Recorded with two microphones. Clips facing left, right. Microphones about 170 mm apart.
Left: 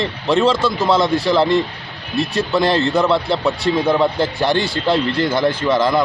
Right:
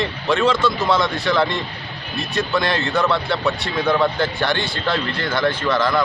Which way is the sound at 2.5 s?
30° left (ahead or behind).